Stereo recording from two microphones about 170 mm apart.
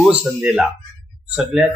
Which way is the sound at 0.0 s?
5° right (ahead or behind).